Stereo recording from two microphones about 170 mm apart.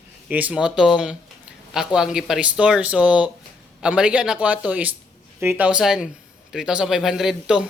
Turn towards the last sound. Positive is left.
turn(degrees=-5)  # may be behind; listen again after turning